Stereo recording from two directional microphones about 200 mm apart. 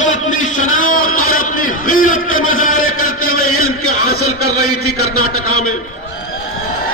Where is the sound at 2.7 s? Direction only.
90° left.